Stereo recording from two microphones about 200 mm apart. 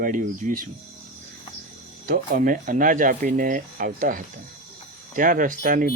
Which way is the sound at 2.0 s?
40° right (ahead or behind).